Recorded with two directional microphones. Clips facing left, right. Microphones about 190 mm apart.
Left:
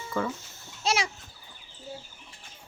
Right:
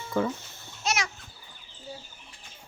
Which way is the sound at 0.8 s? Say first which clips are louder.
Left 2 dB; 30° left (ahead or behind).